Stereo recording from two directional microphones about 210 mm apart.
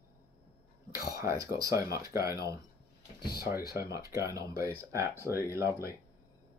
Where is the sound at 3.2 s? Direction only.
45° left (ahead or behind).